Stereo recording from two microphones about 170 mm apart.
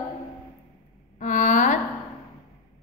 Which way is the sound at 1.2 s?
45° left (ahead or behind).